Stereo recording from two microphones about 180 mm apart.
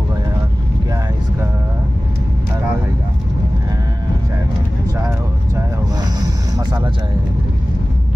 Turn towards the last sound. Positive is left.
turn(degrees=-20)  # may be behind; listen again after turning